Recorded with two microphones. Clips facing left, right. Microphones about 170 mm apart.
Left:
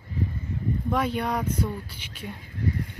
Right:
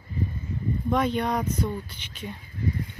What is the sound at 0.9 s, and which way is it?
Speech, 5° left (ahead or behind).